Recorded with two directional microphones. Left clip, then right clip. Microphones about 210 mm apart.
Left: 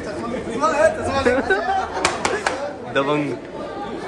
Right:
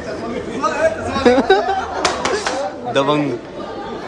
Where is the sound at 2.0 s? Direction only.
Centre (ahead or behind).